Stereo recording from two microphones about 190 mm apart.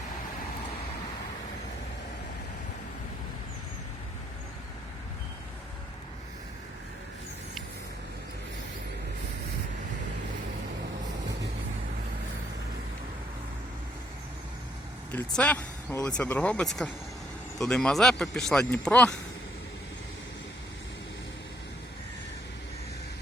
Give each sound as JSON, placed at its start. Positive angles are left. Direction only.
{"t": 15.1, "sound": "speech", "side_deg": 10}